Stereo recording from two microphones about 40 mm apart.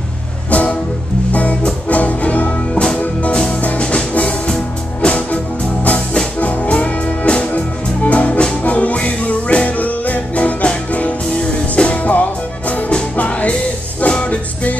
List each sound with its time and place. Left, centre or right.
0.5 s music: left
2.7 s music: left